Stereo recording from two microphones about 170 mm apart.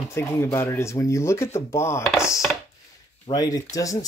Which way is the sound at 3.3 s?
20° left (ahead or behind).